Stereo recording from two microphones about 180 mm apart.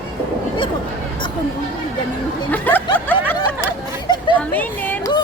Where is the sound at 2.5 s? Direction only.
10° left (ahead or behind).